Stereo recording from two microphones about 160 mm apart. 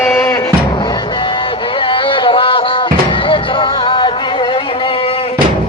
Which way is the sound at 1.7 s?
30° left (ahead or behind).